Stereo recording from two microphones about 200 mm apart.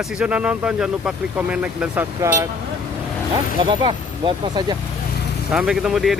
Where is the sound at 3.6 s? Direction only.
25° right (ahead or behind).